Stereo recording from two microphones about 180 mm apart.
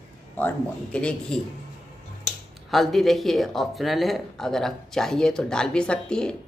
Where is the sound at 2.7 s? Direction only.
Centre (ahead or behind).